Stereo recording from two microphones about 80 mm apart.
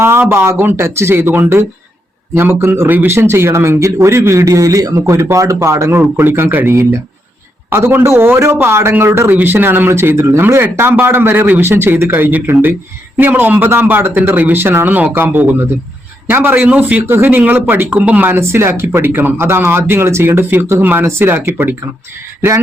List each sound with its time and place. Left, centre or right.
0.0 s a man's voice: right
6.0 s a man's voice: right
17.1 s speech: right